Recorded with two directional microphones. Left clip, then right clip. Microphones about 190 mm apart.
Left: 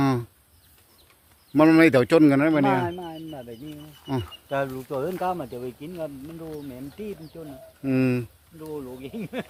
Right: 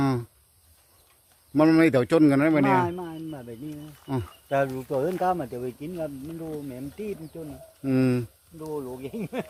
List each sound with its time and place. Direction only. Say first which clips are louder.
0.0 s a sound: left 2 dB; 15° left (ahead or behind)
1.5 s speech: left 3 dB; 15° left (ahead or behind)
2.8 s chicken: even; 50° right (ahead or behind)
4.0 s speech: left 2 dB; centre (ahead or behind)
4.4 s speech: right 3 dB; 50° right (ahead or behind)
7.9 s speech: even; 5° right (ahead or behind)
8.6 s speech: right 2 dB; 35° right (ahead or behind)